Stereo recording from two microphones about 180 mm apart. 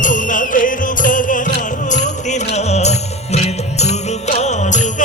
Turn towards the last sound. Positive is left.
turn(degrees=40)  # may be behind; listen again after turning